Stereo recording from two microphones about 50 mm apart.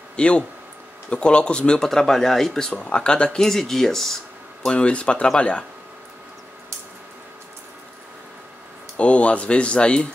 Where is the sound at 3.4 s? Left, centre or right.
Centre.